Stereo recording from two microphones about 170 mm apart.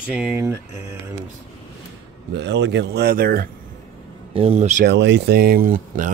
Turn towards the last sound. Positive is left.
turn(degrees=-50)  # may be behind; listen again after turning